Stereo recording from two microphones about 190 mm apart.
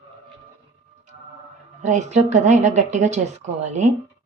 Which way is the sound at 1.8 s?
40° right (ahead or behind).